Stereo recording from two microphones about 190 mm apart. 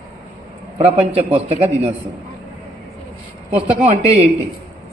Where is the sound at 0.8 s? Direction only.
30° right (ahead or behind).